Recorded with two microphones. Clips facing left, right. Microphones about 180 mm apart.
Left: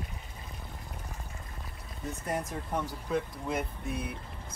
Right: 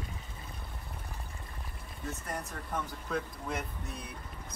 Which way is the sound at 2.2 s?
15° left (ahead or behind).